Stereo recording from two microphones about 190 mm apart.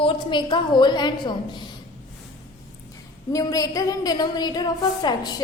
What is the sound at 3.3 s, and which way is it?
A woman's voice, 20° left (ahead or behind).